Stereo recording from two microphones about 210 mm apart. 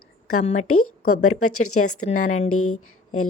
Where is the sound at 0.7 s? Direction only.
90° left.